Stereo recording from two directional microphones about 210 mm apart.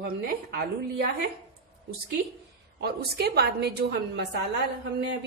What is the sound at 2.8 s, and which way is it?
A woman's voice, 50° right (ahead or behind).